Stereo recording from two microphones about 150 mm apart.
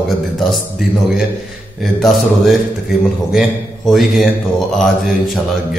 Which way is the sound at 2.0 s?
Centre (ahead or behind).